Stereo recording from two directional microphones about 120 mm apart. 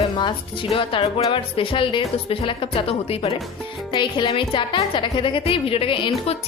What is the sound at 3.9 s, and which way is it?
A woman's voice, 45° left (ahead or behind).